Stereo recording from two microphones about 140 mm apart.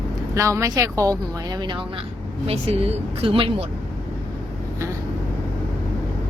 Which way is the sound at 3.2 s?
40° right (ahead or behind).